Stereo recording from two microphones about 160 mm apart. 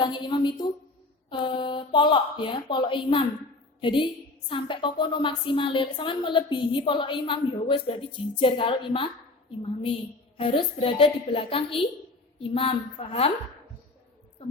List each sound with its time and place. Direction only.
0.0 s a woman's voice: 30° left (ahead or behind)
10.3 s a woman's voice: 35° left (ahead or behind)